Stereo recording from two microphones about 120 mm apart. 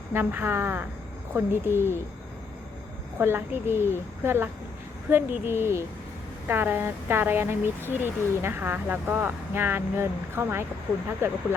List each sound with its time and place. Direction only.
0.1 s a woman's voice: 15° right (ahead or behind)
3.2 s a woman's voice: 20° right (ahead or behind)